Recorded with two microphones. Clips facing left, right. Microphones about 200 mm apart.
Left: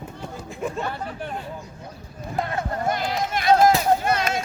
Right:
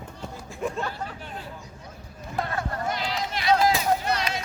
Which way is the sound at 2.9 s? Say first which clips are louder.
Left 5 dB; 50° left (ahead or behind).